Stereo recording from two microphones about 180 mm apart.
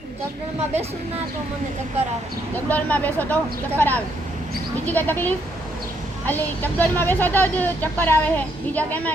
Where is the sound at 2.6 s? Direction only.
10° left (ahead or behind).